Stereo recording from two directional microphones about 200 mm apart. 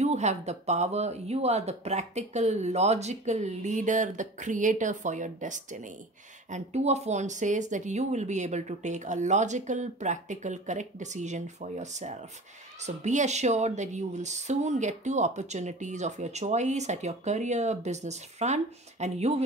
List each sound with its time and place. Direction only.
0.0 s a woman's voice: 35° right (ahead or behind)